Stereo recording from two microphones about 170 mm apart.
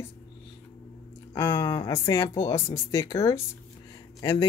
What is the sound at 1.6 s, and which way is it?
Speech, 25° left (ahead or behind).